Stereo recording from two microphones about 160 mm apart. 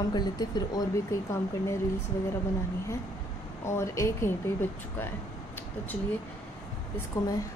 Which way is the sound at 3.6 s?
15° left (ahead or behind).